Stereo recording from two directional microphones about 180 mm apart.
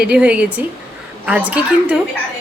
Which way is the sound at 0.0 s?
5° right (ahead or behind).